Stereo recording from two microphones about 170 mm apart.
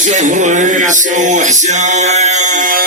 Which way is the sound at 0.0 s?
45° right (ahead or behind).